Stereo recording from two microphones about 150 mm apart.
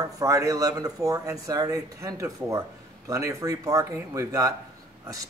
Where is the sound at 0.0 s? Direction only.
20° right (ahead or behind).